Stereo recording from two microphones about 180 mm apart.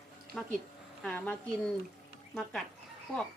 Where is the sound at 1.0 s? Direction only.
5° left (ahead or behind).